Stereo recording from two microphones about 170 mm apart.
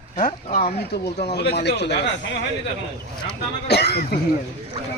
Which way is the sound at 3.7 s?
75° left (ahead or behind).